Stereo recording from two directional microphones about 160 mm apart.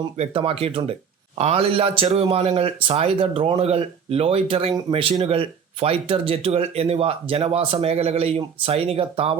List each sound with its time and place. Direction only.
0.2 s speech: 35° right (ahead or behind)